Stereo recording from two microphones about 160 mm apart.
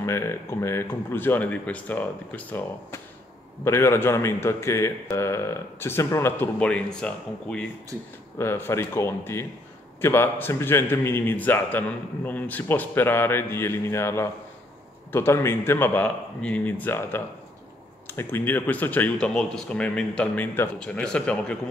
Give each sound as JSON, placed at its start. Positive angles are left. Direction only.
{"t": 0.0, "sound": "a man's voice", "side_deg": 15}
{"t": 7.9, "sound": "speech", "side_deg": -15}
{"t": 8.4, "sound": "a man's voice", "side_deg": 15}